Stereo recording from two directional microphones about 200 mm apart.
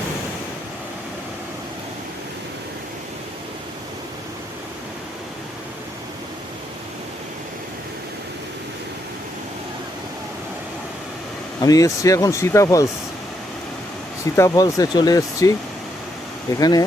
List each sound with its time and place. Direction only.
11.6 s speech: 15° left (ahead or behind)
14.3 s speech: 15° left (ahead or behind)
16.6 s speech: 20° left (ahead or behind)